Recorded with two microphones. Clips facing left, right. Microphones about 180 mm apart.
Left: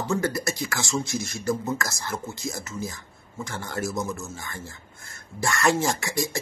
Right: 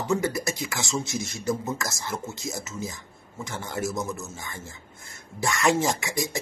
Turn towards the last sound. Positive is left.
turn(degrees=-20)  # may be behind; listen again after turning